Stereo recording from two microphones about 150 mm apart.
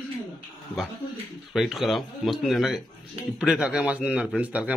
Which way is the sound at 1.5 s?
Centre (ahead or behind).